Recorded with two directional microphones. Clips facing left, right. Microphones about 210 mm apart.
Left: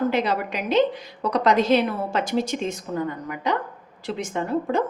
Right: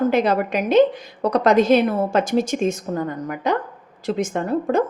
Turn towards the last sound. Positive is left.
turn(degrees=-45)  # may be behind; listen again after turning